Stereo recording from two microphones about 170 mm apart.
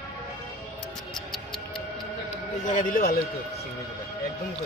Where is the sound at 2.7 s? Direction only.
55° left (ahead or behind).